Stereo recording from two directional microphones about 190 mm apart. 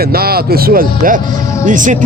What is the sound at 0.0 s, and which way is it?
A man's voice, 55° right (ahead or behind).